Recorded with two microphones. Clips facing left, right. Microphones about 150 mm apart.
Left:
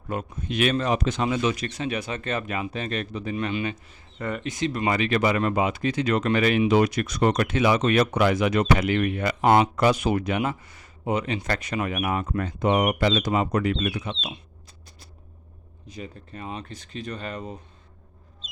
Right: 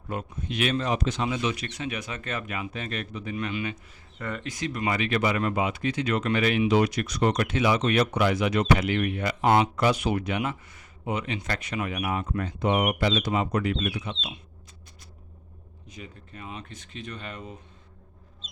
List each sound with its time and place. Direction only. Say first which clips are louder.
0.1 s speech: left 3 dB; 50° left (ahead or behind); by 3.8 s 30° left (ahead or behind)
4.2 s speech: left 5 dB; 20° left (ahead or behind); by 14.3 s 40° left (ahead or behind)
15.9 s speech: left 5 dB; 35° left (ahead or behind)